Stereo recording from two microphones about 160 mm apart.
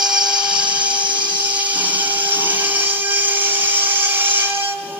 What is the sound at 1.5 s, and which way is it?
Dental drill, 10° right (ahead or behind).